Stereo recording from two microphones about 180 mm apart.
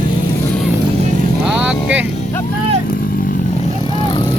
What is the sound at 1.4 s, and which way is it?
Vehicle, 5° right (ahead or behind).